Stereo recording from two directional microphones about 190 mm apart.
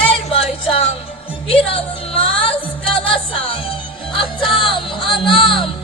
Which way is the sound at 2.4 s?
30° left (ahead or behind).